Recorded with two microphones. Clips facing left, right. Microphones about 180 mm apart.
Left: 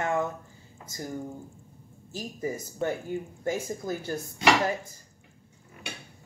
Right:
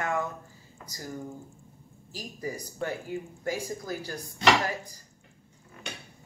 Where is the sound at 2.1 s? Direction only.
25° left (ahead or behind).